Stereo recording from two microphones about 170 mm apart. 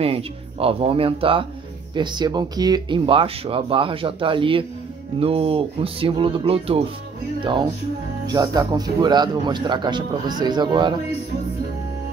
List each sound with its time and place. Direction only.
0.0 s speech: 35° right (ahead or behind)
8.3 s speech: 20° right (ahead or behind)